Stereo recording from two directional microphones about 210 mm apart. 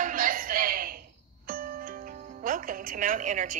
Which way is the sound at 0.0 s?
40° right (ahead or behind).